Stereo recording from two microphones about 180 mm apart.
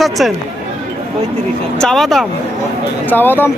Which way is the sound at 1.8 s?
Centre (ahead or behind).